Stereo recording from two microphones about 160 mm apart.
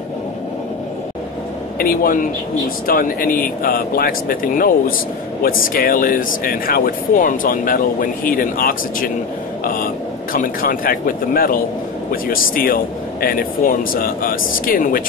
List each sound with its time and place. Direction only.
1.8 s speech: 65° left (ahead or behind)
10.3 s speech: 60° left (ahead or behind)